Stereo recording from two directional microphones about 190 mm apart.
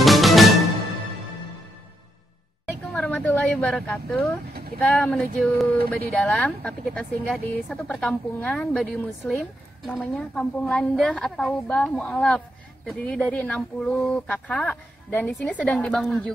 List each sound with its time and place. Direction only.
0.0 s music: centre (ahead or behind)
2.9 s a sound: 5° left (ahead or behind)
4.7 s speech: 5° left (ahead or behind)